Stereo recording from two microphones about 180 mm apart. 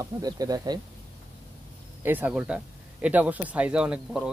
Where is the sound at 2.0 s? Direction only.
10° right (ahead or behind).